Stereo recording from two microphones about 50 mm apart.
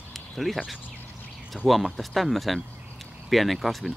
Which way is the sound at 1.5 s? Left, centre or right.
Centre.